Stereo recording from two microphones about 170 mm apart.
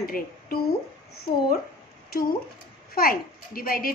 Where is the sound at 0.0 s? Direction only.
60° left (ahead or behind).